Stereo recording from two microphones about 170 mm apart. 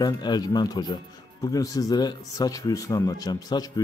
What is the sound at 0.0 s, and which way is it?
Speech, 25° left (ahead or behind).